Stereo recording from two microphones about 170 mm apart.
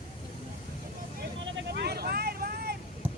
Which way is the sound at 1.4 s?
85° right.